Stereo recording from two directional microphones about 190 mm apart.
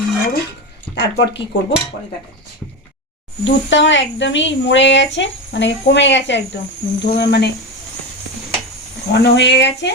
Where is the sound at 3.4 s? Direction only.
75° left (ahead or behind).